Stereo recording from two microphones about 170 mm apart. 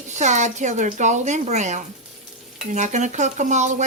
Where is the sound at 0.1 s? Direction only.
45° right (ahead or behind).